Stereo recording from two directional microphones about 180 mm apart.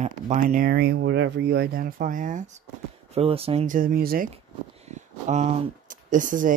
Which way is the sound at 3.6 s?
50° right (ahead or behind).